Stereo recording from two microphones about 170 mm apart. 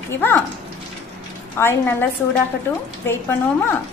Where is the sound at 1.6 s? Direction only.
10° left (ahead or behind).